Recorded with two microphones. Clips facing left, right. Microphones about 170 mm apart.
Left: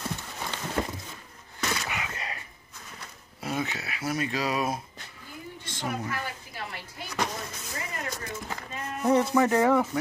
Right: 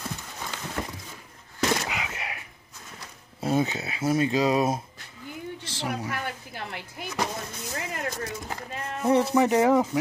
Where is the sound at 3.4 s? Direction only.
30° right (ahead or behind).